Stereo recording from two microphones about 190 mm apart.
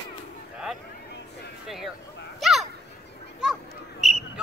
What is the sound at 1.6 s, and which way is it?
Speech, centre (ahead or behind).